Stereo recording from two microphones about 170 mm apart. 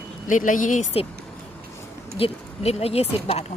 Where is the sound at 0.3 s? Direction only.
50° left (ahead or behind).